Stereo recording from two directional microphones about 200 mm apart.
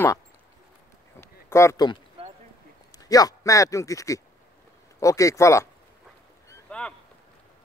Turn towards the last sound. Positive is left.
turn(degrees=5)  # may be behind; listen again after turning